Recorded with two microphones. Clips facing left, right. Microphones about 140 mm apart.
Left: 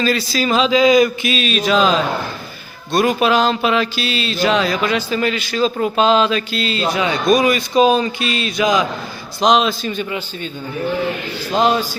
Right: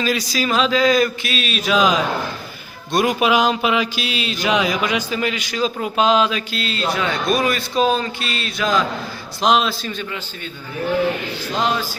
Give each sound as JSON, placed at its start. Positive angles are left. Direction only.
{"t": 0.0, "sound": "speech", "side_deg": -10}
{"t": 0.4, "sound": "mantra", "side_deg": 0}
{"t": 2.9, "sound": "speech", "side_deg": -15}
{"t": 6.7, "sound": "a man's voice", "side_deg": 10}
{"t": 9.4, "sound": "mantra", "side_deg": 0}
{"t": 10.1, "sound": "a man's voice", "side_deg": 15}
{"t": 11.5, "sound": "a man's voice", "side_deg": 20}